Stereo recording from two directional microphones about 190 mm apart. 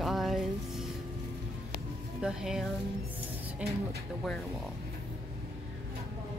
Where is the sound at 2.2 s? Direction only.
5° right (ahead or behind).